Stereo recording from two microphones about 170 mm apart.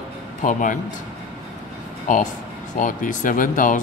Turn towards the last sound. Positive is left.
turn(degrees=50)  # may be behind; listen again after turning